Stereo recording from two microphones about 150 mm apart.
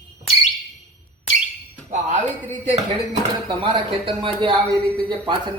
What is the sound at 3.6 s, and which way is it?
Speech, 35° right (ahead or behind).